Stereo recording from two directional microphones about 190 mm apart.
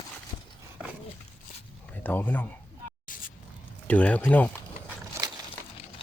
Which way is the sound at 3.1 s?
45° left (ahead or behind).